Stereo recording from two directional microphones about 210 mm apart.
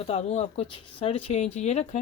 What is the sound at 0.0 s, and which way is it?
A woman's voice, 30° left (ahead or behind).